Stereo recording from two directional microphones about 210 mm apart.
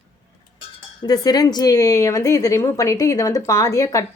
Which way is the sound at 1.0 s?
20° left (ahead or behind).